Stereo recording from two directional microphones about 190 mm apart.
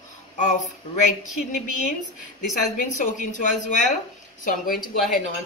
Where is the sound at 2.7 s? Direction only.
45° left (ahead or behind).